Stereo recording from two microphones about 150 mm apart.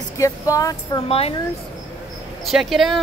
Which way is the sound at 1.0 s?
40° left (ahead or behind).